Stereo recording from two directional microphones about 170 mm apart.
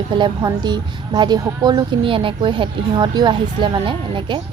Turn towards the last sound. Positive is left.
turn(degrees=-30)  # may be behind; listen again after turning